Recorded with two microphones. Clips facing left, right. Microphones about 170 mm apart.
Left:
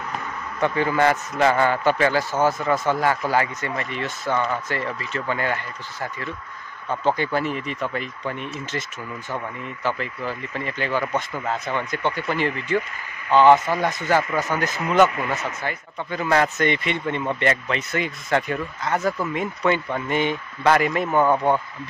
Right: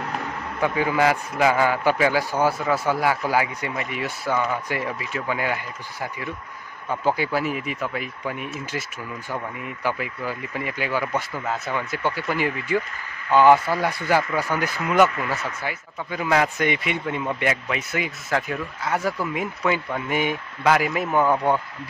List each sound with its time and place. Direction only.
0.6 s a man's voice: 10° right (ahead or behind)
9.8 s a man's voice: 10° right (ahead or behind)
15.0 s speech: 15° left (ahead or behind)
15.6 s a man's voice: 10° right (ahead or behind)